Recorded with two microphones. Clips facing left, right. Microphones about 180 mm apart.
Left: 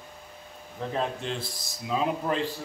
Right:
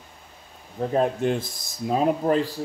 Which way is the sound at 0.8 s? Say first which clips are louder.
Right 8 dB; 45° right (ahead or behind).